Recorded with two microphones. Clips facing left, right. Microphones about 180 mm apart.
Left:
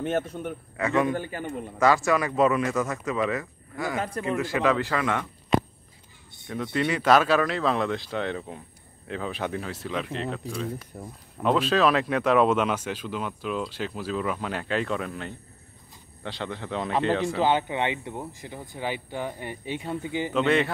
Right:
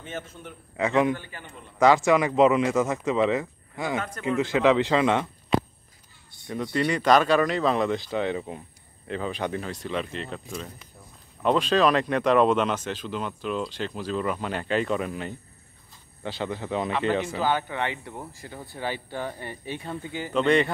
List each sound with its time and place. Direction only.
0.0 s a man's voice: 60° left (ahead or behind)
0.7 s a man's voice: 20° right (ahead or behind)
1.1 s a man's voice: 45° left (ahead or behind)
1.8 s a man's voice: 20° right (ahead or behind)
4.0 s a man's voice: 30° left (ahead or behind)
4.4 s a man's voice: 20° right (ahead or behind)
6.5 s speech: centre (ahead or behind)
10.9 s a man's voice: 55° left (ahead or behind)
11.4 s speech: 5° left (ahead or behind)
17.4 s speech: 20° left (ahead or behind)
20.3 s speech: centre (ahead or behind)